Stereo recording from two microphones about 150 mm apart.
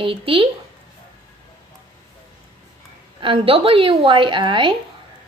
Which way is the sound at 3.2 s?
35° right (ahead or behind).